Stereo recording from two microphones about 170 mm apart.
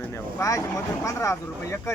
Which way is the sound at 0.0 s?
15° left (ahead or behind).